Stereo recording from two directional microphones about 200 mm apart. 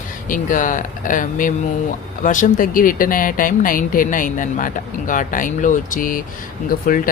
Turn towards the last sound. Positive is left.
turn(degrees=45)  # may be behind; listen again after turning